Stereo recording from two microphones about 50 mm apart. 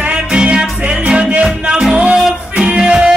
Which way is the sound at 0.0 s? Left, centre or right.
Centre.